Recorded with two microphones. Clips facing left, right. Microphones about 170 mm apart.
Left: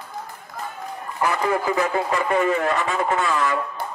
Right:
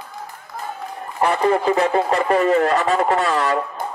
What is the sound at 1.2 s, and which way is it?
Speech, 30° right (ahead or behind).